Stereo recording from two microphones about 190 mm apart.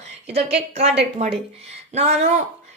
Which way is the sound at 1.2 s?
35° right (ahead or behind).